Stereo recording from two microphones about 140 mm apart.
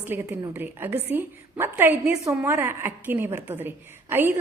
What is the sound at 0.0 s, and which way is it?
A woman's voice, 15° right (ahead or behind).